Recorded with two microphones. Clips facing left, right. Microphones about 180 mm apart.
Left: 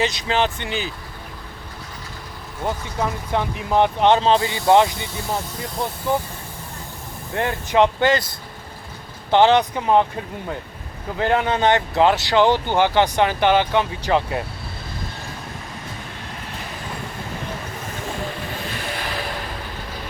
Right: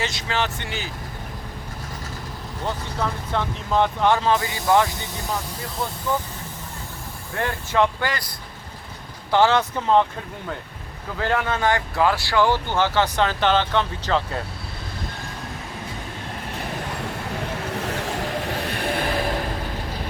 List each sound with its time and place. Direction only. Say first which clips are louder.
0.0 s speech: left 5 dB; 20° left (ahead or behind)
2.6 s speech: left 3 dB; 15° left (ahead or behind)
7.3 s speech: left 4 dB; 20° left (ahead or behind)
9.3 s speech: left 3 dB; 20° left (ahead or behind)
11.2 s speech: left 4 dB; 20° left (ahead or behind)
17.7 s vehicle: right 4 dB; 70° right (ahead or behind)
18.6 s vehicle: right 4 dB; 60° right (ahead or behind)